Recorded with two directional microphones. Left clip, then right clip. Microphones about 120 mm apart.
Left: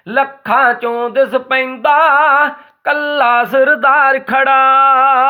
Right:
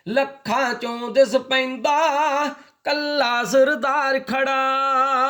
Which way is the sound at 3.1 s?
45° right (ahead or behind).